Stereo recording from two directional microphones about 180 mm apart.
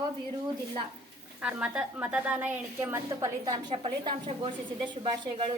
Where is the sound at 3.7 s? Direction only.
30° right (ahead or behind).